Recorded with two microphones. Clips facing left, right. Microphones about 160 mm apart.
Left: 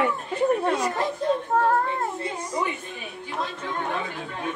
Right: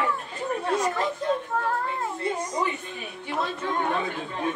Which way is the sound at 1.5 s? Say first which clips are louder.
Left 6 dB; 45° left (ahead or behind).